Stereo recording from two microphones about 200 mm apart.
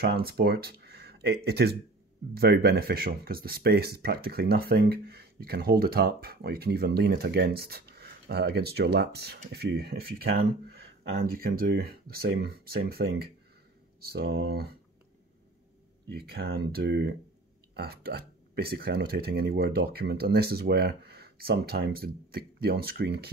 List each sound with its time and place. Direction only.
0.0 s speech: 50° right (ahead or behind)
11.3 s speech: 50° right (ahead or behind)
16.1 s speech: 50° right (ahead or behind)